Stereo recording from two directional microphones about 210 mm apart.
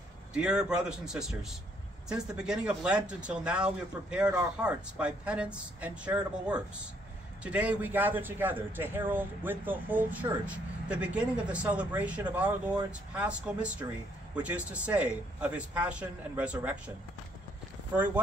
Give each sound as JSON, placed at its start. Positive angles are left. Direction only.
{"t": 0.3, "sound": "a man's voice", "side_deg": -5}
{"t": 17.9, "sound": "speech", "side_deg": -5}